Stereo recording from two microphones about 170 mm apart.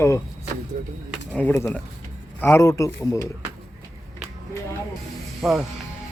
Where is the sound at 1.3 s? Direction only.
10° left (ahead or behind).